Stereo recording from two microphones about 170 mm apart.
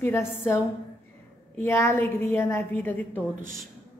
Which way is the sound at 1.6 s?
15° left (ahead or behind).